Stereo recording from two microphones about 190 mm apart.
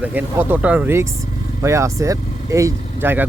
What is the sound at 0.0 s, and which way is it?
Speech, 10° right (ahead or behind).